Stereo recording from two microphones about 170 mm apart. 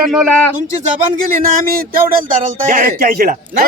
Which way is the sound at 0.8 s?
55° right (ahead or behind).